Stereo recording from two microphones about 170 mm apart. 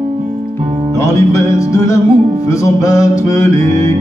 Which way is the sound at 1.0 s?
20° left (ahead or behind).